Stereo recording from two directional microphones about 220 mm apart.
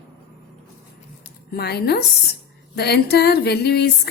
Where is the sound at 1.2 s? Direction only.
45° left (ahead or behind).